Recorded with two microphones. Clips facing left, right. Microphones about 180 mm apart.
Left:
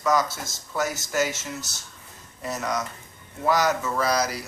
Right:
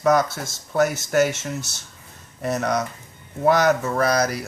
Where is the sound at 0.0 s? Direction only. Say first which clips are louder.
Right 5 dB; 60° right (ahead or behind).